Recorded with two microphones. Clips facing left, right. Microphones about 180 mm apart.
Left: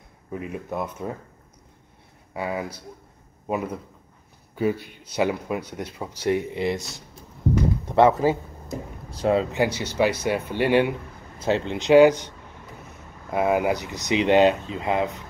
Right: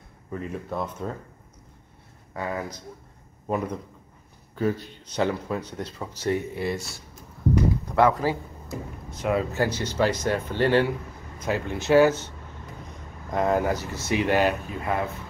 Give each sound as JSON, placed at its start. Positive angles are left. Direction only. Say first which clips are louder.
{"t": 0.3, "sound": "speech", "louder": "left 1 dB", "side_deg": 10}
{"t": 2.3, "sound": "a man's voice", "louder": "left 2 dB", "side_deg": 10}
{"t": 7.8, "sound": "a sound", "louder": "left 6 dB", "side_deg": 25}
{"t": 9.1, "sound": "speech", "louder": "left 4 dB", "side_deg": 30}
{"t": 11.3, "sound": "speech", "louder": "left 4 dB", "side_deg": 25}